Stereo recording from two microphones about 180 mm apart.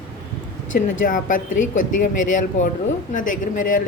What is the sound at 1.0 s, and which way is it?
Speech, 45° left (ahead or behind).